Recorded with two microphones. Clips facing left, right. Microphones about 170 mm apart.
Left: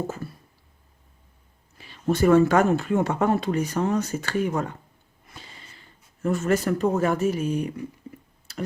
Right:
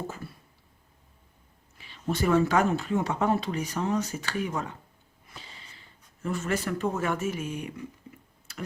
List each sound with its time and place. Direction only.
1.8 s speech: 45° left (ahead or behind)
6.2 s speech: 45° left (ahead or behind)